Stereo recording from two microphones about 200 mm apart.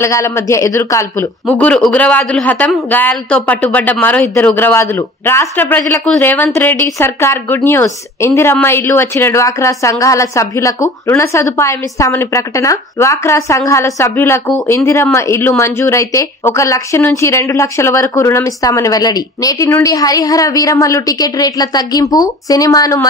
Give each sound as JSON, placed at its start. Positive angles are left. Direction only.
{"t": 0.0, "sound": "a man's voice", "side_deg": 15}